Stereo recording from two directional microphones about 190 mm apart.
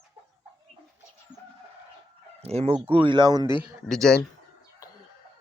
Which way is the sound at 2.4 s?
30° right (ahead or behind).